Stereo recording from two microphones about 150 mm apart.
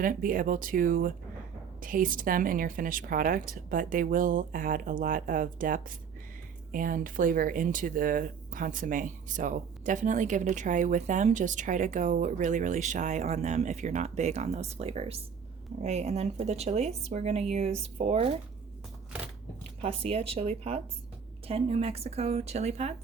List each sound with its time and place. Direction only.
0.0 s speech: 65° right (ahead or behind); by 18.3 s 40° right (ahead or behind)
19.8 s speech: 40° right (ahead or behind)